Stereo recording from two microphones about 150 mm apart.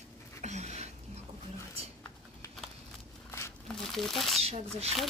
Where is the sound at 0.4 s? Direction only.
50° right (ahead or behind).